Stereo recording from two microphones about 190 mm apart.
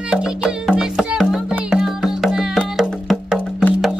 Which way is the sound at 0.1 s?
5° right (ahead or behind).